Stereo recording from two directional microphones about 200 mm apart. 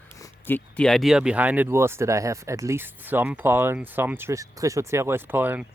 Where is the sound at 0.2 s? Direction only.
10° left (ahead or behind).